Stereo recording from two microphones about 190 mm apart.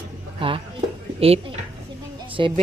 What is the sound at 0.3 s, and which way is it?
Speech, 30° right (ahead or behind).